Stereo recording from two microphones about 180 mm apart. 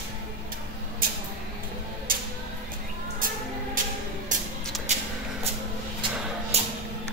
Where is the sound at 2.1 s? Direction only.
50° right (ahead or behind).